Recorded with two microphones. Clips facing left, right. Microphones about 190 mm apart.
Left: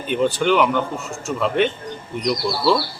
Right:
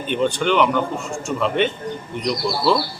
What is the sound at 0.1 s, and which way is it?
Speech, 5° left (ahead or behind).